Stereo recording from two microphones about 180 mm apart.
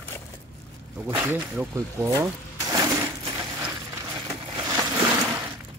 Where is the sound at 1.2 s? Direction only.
10° right (ahead or behind).